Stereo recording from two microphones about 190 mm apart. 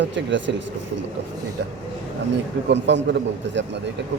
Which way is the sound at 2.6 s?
70° right (ahead or behind).